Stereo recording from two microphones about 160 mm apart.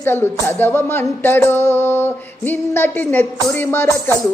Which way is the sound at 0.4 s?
15° left (ahead or behind).